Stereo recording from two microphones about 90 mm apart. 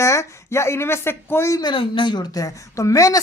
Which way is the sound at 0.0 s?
35° left (ahead or behind).